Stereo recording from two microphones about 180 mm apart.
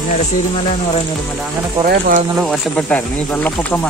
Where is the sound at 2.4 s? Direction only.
5° left (ahead or behind).